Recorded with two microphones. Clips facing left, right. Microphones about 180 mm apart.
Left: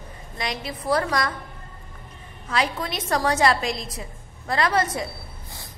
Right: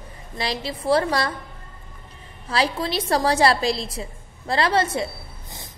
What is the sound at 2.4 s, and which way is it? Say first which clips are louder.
A woman's voice: right 2 dB; 30° right (ahead or behind).